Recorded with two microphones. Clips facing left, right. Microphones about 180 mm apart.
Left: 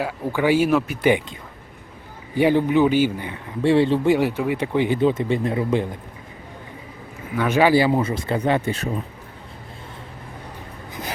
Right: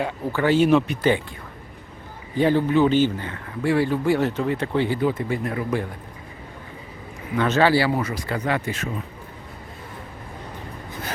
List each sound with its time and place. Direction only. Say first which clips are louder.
0.0 s speech: left 1 dB; 10° left (ahead or behind)
2.3 s speech: left 2 dB; 15° left (ahead or behind)
3.6 s speech: left 4 dB; 25° left (ahead or behind)
7.3 s speech: left 2 dB; 10° left (ahead or behind); by 8.9 s 30° left (ahead or behind)